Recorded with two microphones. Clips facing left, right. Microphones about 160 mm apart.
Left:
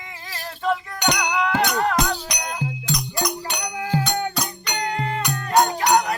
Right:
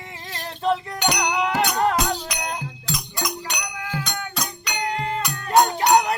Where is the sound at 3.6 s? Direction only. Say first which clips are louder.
Left 6 dB; 40° left (ahead or behind).